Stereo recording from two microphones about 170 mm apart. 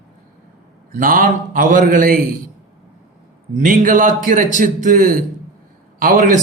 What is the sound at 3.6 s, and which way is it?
A man's voice, 55° right (ahead or behind).